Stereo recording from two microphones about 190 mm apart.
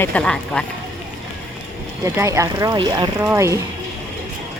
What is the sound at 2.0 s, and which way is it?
Speech, 15° right (ahead or behind).